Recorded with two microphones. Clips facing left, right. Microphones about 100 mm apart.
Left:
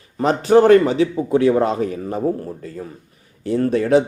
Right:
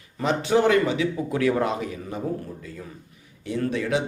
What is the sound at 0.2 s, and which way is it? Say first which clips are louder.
Speech: left 8 dB; 45° left (ahead or behind).